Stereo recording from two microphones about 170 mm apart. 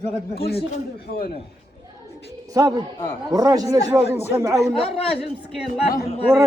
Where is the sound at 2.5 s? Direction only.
20° right (ahead or behind).